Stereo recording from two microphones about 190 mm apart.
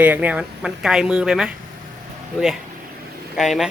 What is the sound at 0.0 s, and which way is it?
Speech, 10° right (ahead or behind).